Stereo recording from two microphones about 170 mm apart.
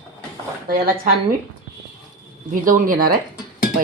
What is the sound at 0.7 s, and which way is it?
Speech, 60° right (ahead or behind).